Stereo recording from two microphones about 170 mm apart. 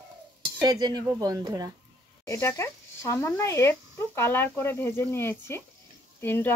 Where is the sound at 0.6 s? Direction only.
25° right (ahead or behind).